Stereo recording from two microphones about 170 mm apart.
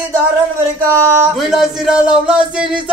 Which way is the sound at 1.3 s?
Centre (ahead or behind).